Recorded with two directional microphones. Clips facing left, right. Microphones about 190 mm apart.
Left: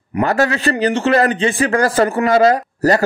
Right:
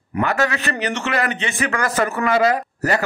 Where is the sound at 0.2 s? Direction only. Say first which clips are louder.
Left 5 dB; 35° left (ahead or behind).